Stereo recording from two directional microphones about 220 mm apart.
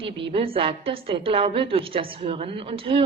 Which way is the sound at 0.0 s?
25° right (ahead or behind).